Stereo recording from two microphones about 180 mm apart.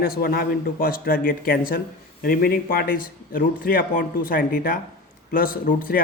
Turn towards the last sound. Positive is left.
turn(degrees=50)  # may be behind; listen again after turning